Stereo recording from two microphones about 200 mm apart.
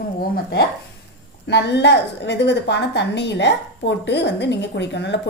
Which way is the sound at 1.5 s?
60° left (ahead or behind).